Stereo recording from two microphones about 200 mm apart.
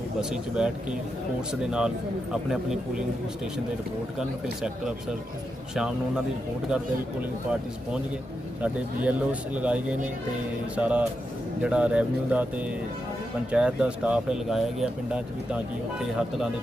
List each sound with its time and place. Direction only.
0.2 s speech: 5° right (ahead or behind)
2.3 s speech: 5° right (ahead or behind)
5.7 s speech: 5° right (ahead or behind)
8.6 s speech: 5° right (ahead or behind)